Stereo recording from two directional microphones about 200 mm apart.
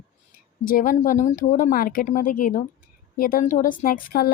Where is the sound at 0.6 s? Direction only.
45° left (ahead or behind).